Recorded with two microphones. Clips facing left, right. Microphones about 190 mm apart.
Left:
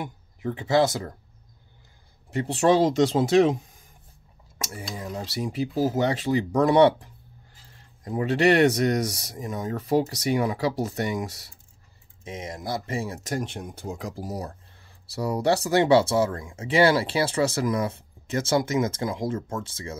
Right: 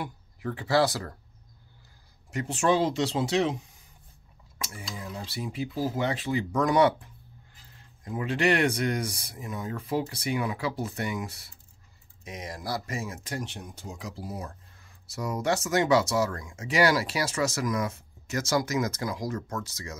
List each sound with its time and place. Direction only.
0.0 s speech: 20° left (ahead or behind)
2.3 s speech: 35° left (ahead or behind)
4.6 s speech: 40° left (ahead or behind)
12.3 s speech: 25° left (ahead or behind)